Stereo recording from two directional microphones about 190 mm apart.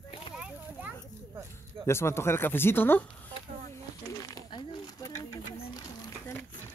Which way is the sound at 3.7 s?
20° left (ahead or behind).